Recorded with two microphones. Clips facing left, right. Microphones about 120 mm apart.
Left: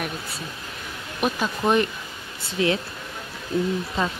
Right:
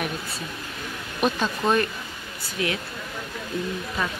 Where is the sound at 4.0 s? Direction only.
25° left (ahead or behind).